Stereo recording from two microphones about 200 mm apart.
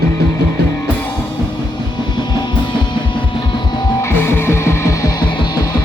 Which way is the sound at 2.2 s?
20° left (ahead or behind).